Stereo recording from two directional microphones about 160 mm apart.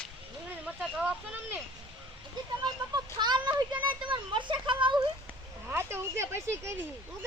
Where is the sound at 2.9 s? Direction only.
25° right (ahead or behind).